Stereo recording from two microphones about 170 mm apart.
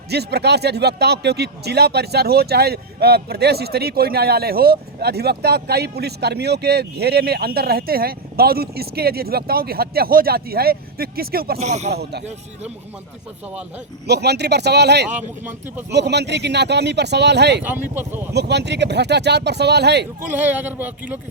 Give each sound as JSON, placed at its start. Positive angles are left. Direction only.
{"t": 0.1, "sound": "speech", "side_deg": -75}
{"t": 11.6, "sound": "speech", "side_deg": -40}
{"t": 14.1, "sound": "speech", "side_deg": -80}
{"t": 17.6, "sound": "speech", "side_deg": -10}
{"t": 18.3, "sound": "speech", "side_deg": -80}
{"t": 20.3, "sound": "speech", "side_deg": -10}